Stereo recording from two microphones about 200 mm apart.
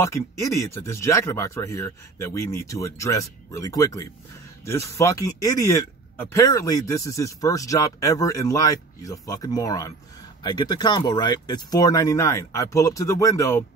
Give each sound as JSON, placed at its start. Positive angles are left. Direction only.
{"t": 0.0, "sound": "speech", "side_deg": 15}